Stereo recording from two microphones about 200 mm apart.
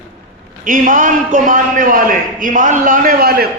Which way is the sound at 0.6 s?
40° right (ahead or behind).